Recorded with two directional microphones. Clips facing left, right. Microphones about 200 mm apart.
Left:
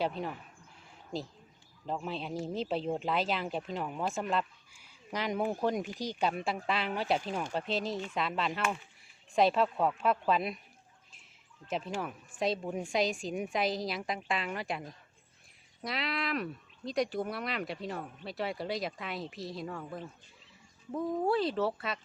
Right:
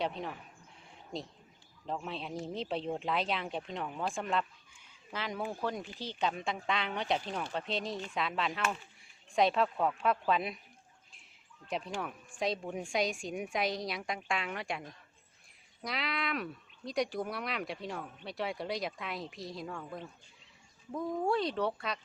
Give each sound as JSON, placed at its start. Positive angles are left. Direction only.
{"t": 0.0, "sound": "speech", "side_deg": 0}
{"t": 1.9, "sound": "speech", "side_deg": 0}
{"t": 5.1, "sound": "speech", "side_deg": 15}
{"t": 11.7, "sound": "speech", "side_deg": 0}